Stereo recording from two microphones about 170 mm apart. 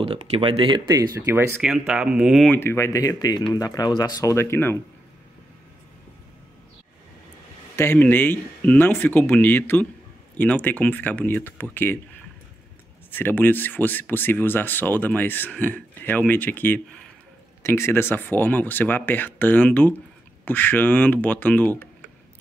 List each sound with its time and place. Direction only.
0.0 s speech: 30° right (ahead or behind)
1.2 s speech: 15° right (ahead or behind)
2.4 s speech: 10° left (ahead or behind)
7.7 s speech: 15° left (ahead or behind)
13.1 s speech: 10° left (ahead or behind)